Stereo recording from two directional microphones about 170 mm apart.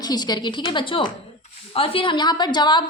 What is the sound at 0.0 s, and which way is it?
A woman's voice, 25° left (ahead or behind).